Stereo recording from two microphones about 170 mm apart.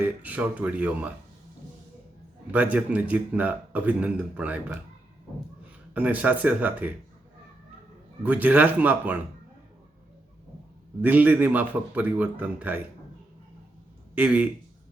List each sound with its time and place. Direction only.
0.0 s speech: 10° right (ahead or behind)
2.5 s speech: 10° right (ahead or behind)
5.9 s speech: 10° right (ahead or behind)
8.2 s speech: 10° right (ahead or behind)
11.0 s speech: 10° right (ahead or behind)
14.2 s speech: 10° right (ahead or behind)